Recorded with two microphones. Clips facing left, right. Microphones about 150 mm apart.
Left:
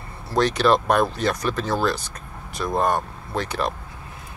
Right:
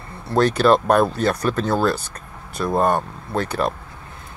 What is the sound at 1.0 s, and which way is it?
Speech, 30° right (ahead or behind).